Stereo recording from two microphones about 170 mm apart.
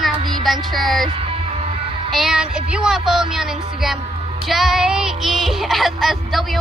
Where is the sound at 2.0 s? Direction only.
Centre (ahead or behind).